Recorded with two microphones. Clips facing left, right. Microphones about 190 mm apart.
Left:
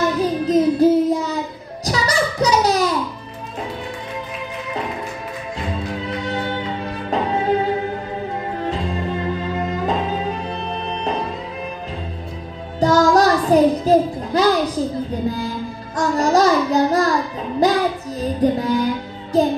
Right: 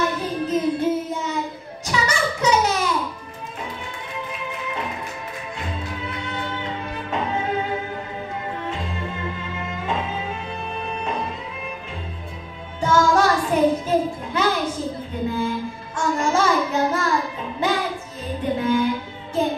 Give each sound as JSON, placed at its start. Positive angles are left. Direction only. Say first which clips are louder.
{"t": 0.2, "sound": "child singing", "louder": "left 6 dB", "side_deg": 35}
{"t": 1.9, "sound": "a sound", "louder": "left 3 dB", "side_deg": 35}
{"t": 6.0, "sound": "music", "louder": "left 6 dB", "side_deg": 35}
{"t": 9.6, "sound": "music", "louder": "left 4 dB", "side_deg": 40}
{"t": 12.8, "sound": "music", "louder": "left 4 dB", "side_deg": 40}
{"t": 15.2, "sound": "mantra", "louder": "right 4 dB", "side_deg": 35}
{"t": 16.0, "sound": "child singing", "louder": "left 5 dB", "side_deg": 40}
{"t": 17.6, "sound": "music", "louder": "left 6 dB", "side_deg": 40}
{"t": 19.3, "sound": "child singing", "louder": "left 6 dB", "side_deg": 35}